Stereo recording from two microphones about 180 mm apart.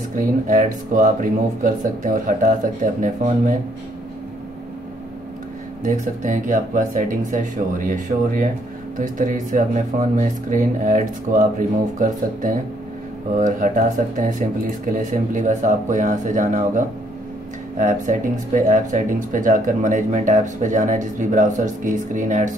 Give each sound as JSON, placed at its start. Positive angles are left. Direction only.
{"t": 0.5, "sound": "speech", "side_deg": -45}
{"t": 5.9, "sound": "speech", "side_deg": -45}